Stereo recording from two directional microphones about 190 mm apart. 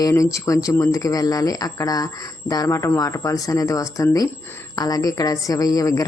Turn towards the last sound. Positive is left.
turn(degrees=20)  # may be behind; listen again after turning